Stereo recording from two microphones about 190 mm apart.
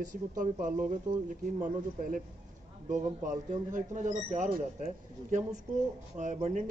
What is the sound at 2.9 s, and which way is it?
Speech, 40° right (ahead or behind).